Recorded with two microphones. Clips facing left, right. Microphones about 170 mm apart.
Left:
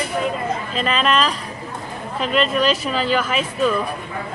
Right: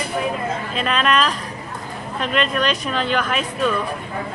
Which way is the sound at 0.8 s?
Centre (ahead or behind).